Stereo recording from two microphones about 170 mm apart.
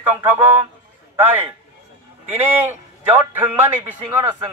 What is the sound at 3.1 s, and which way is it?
Speech, 10° right (ahead or behind).